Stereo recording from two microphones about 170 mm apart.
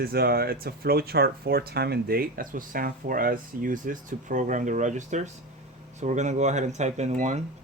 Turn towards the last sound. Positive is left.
turn(degrees=-45)  # may be behind; listen again after turning